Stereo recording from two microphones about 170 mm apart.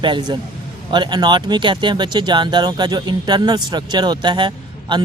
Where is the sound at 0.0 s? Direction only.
30° right (ahead or behind).